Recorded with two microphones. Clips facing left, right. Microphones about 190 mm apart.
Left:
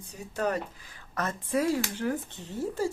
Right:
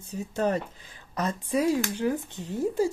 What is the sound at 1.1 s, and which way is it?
Speech, 15° right (ahead or behind).